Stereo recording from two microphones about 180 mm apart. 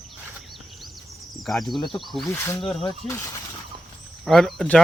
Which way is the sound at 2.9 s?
15° left (ahead or behind).